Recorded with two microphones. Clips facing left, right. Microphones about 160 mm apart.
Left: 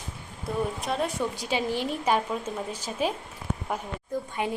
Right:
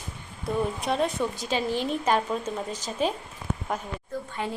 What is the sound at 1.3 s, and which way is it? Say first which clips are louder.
A woman's voice: right 1 dB; 15° left (ahead or behind).